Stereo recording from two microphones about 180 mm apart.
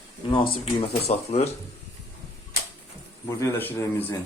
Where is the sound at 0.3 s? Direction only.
30° left (ahead or behind).